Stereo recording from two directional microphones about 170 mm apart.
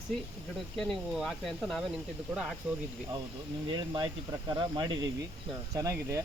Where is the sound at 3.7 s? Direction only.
25° right (ahead or behind).